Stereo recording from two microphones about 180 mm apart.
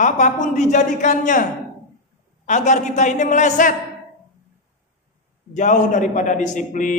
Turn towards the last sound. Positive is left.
turn(degrees=45)  # may be behind; listen again after turning